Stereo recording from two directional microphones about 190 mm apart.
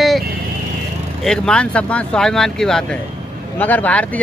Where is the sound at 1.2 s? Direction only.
5° left (ahead or behind).